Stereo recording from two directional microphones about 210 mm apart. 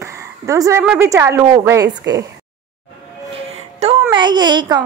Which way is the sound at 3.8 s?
30° right (ahead or behind).